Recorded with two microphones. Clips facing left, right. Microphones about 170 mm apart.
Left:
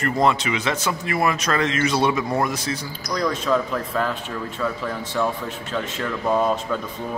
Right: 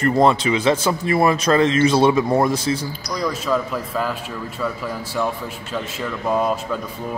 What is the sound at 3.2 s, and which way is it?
A man's voice, 5° right (ahead or behind).